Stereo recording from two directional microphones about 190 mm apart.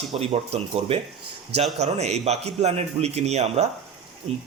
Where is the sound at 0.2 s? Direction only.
30° right (ahead or behind).